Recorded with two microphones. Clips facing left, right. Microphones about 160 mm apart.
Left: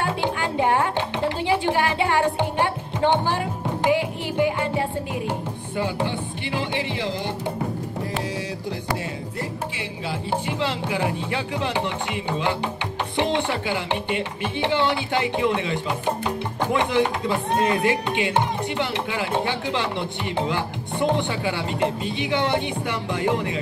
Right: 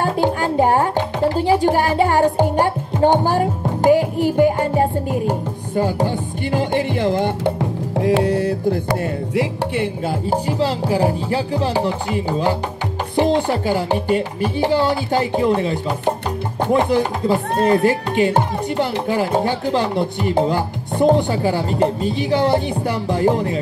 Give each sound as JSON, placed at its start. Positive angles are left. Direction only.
{"t": 0.0, "sound": "music", "side_deg": -40}
{"t": 7.9, "sound": "music", "side_deg": -80}
{"t": 9.8, "sound": "speech", "side_deg": -45}